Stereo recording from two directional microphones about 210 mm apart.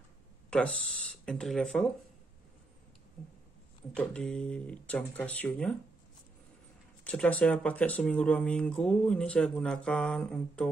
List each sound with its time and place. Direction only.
0.5 s speech: 5° left (ahead or behind)
3.9 s speech: 5° left (ahead or behind)
7.1 s speech: 5° left (ahead or behind)